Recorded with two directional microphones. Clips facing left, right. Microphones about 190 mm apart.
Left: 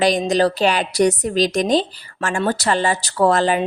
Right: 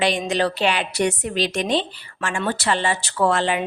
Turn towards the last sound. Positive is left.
turn(degrees=40)  # may be behind; listen again after turning